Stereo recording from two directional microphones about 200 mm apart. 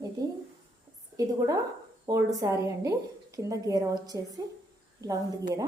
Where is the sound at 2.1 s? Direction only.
15° right (ahead or behind).